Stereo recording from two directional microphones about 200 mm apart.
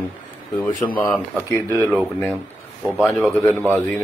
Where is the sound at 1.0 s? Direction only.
5° left (ahead or behind).